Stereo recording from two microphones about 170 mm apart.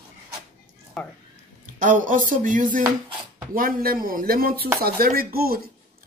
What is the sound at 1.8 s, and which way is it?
Music, 50° right (ahead or behind).